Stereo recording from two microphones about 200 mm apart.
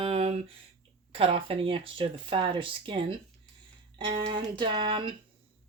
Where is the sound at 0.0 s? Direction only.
30° right (ahead or behind).